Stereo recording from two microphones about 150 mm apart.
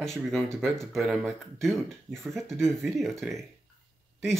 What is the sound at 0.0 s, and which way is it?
Speech, centre (ahead or behind).